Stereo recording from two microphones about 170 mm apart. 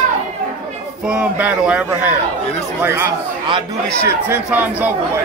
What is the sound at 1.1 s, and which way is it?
Speech, 10° right (ahead or behind).